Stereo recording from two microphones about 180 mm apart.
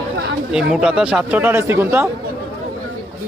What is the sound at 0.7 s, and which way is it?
A man's voice, 5° right (ahead or behind).